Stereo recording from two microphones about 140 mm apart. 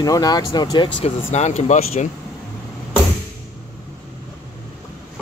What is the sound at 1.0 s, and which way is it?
Speech, 55° left (ahead or behind).